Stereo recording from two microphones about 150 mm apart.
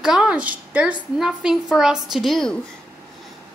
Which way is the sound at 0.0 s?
5° right (ahead or behind).